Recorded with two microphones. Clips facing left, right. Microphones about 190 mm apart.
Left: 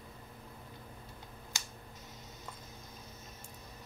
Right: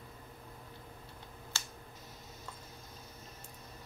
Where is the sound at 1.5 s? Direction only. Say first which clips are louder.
Even; 15° left (ahead or behind).